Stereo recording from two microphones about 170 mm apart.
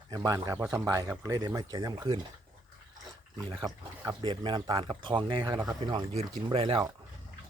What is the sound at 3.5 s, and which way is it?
Speech, 25° right (ahead or behind).